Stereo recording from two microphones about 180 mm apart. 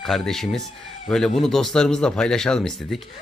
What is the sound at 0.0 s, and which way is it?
Speech, centre (ahead or behind).